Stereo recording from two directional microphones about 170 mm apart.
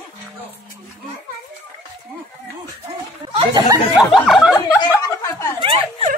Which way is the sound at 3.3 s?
25° right (ahead or behind).